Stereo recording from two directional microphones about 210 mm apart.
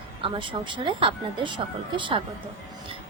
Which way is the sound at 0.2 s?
25° right (ahead or behind).